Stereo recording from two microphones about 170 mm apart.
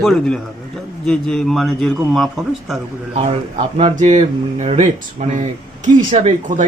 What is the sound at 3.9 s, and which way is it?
Speech, 45° right (ahead or behind).